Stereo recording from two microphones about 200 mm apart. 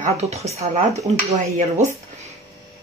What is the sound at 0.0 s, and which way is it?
Speech, 30° right (ahead or behind).